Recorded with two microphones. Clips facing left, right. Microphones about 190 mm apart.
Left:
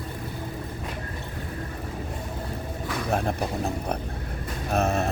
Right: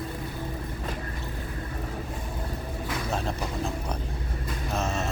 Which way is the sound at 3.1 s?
60° left (ahead or behind).